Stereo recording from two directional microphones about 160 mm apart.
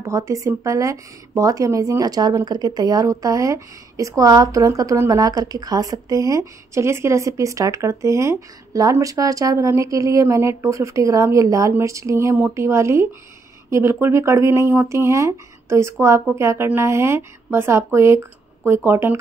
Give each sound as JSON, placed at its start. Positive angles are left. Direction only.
{"t": 0.0, "sound": "speech", "side_deg": -20}